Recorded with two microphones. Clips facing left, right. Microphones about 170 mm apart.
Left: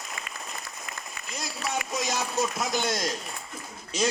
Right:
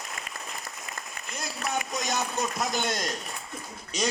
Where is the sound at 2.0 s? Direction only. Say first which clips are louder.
Left 4 dB; 5° left (ahead or behind).